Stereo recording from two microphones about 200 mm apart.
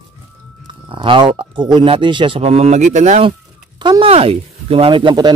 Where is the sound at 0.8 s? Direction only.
25° right (ahead or behind).